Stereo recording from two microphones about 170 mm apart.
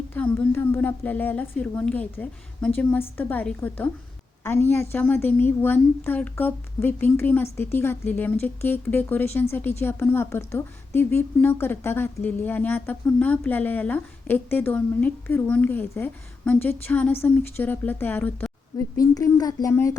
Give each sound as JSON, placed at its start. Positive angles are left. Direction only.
{"t": 0.1, "sound": "speech", "side_deg": 10}
{"t": 18.9, "sound": "a woman's voice", "side_deg": 20}